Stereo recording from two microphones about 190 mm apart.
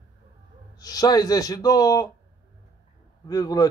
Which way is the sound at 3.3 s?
20° left (ahead or behind).